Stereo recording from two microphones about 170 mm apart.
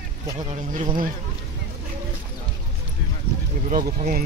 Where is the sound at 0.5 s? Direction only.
50° right (ahead or behind).